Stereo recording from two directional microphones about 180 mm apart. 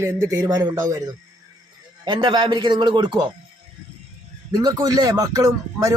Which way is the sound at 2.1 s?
25° right (ahead or behind).